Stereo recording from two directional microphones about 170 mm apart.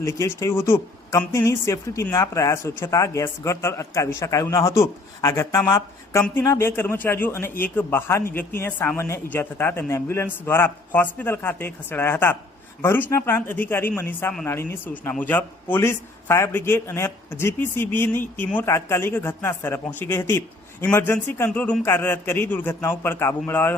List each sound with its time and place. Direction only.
0.0 s a woman's voice: 20° left (ahead or behind)